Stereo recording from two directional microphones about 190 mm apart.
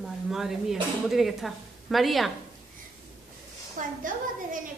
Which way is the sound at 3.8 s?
45° right (ahead or behind).